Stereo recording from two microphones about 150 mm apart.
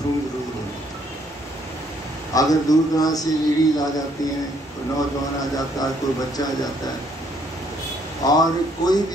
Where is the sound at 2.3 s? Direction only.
25° left (ahead or behind).